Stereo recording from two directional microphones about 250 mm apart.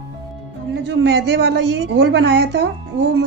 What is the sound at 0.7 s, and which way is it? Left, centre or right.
A woman's voice, right.